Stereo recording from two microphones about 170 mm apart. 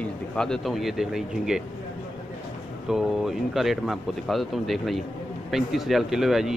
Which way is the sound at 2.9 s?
Centre (ahead or behind).